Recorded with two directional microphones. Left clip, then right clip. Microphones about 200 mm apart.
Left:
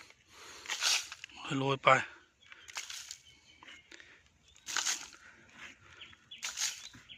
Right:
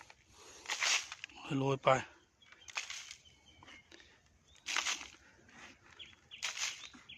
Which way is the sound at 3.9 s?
5° right (ahead or behind).